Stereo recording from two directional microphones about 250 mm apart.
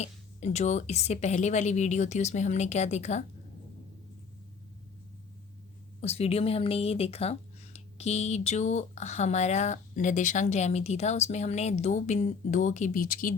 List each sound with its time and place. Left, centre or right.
0.0 s speech: left
6.0 s speech: left